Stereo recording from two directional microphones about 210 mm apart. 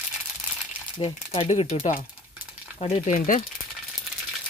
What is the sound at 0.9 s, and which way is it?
Speech, 25° left (ahead or behind).